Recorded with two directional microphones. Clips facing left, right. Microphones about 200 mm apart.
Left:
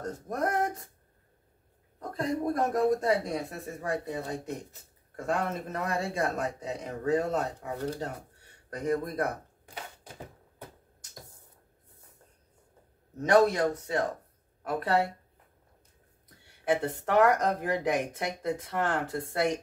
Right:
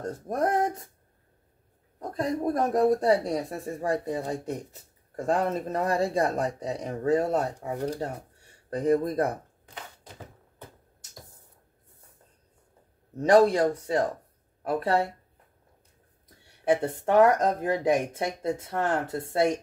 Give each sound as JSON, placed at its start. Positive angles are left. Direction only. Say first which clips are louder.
{"t": 0.3, "sound": "speech", "louder": "right 4 dB", "side_deg": -30}
{"t": 2.2, "sound": "speech", "louder": "right 2 dB", "side_deg": -30}
{"t": 13.2, "sound": "speech", "louder": "right 3 dB", "side_deg": -30}
{"t": 16.6, "sound": "speech", "louder": "right 4 dB", "side_deg": -25}